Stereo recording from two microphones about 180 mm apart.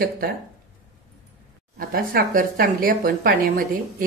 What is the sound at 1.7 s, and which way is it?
Speech, 50° right (ahead or behind).